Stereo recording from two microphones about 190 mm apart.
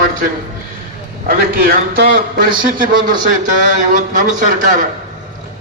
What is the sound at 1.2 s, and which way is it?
A man's voice, 50° right (ahead or behind).